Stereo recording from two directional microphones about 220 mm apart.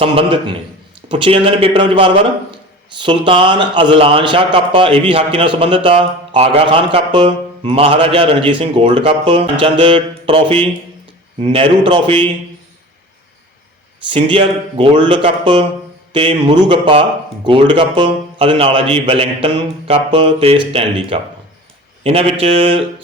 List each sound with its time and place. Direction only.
0.0 s a man's voice: 25° right (ahead or behind)
14.1 s a man's voice: 25° right (ahead or behind)